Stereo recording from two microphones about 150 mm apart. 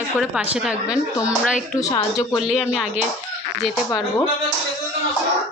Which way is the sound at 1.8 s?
25° left (ahead or behind).